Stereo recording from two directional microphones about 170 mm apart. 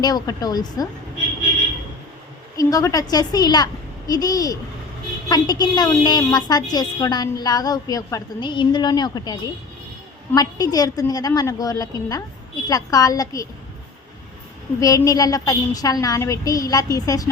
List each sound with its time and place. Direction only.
0.0 s a woman's voice: 25° left (ahead or behind)
2.6 s a woman's voice: 20° left (ahead or behind)
14.8 s a woman's voice: 20° left (ahead or behind)